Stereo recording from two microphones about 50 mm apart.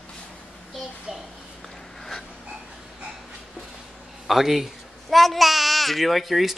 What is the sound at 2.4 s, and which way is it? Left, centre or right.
Dog, right.